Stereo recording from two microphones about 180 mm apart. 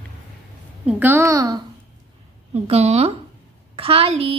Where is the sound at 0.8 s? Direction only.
10° right (ahead or behind).